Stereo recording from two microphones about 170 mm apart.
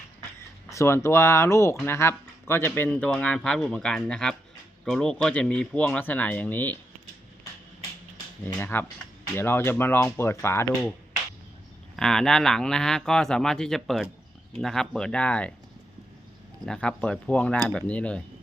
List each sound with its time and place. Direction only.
0.7 s speech: 15° left (ahead or behind)
8.4 s speech: 10° left (ahead or behind)
11.9 s speech: 5° left (ahead or behind)
16.6 s speech: 5° left (ahead or behind)